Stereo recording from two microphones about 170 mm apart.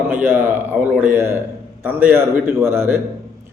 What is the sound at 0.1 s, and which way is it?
A man's voice, 10° right (ahead or behind).